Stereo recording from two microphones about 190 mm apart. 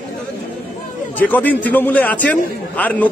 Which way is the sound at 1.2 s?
10° left (ahead or behind).